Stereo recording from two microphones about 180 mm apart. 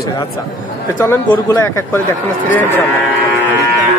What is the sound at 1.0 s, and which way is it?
Speech, 15° left (ahead or behind).